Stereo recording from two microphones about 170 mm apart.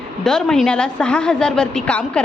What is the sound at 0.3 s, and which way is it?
A woman's voice, 5° left (ahead or behind).